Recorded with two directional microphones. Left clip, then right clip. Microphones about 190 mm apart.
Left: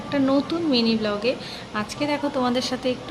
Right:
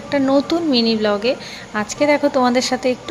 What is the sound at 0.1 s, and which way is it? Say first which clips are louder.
A woman's voice: right 6 dB; 25° right (ahead or behind).